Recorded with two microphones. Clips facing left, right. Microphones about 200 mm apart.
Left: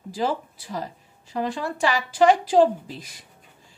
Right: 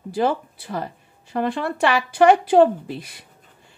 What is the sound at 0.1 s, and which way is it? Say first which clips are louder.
Speech: right 4 dB; 60° right (ahead or behind).